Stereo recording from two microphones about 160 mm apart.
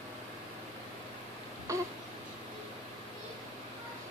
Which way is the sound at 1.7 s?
20° right (ahead or behind).